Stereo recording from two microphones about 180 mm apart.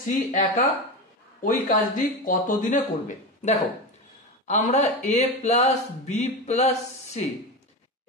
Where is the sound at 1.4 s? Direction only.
45° left (ahead or behind).